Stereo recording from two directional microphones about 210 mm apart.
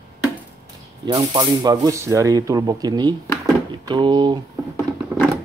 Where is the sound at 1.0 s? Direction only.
20° right (ahead or behind).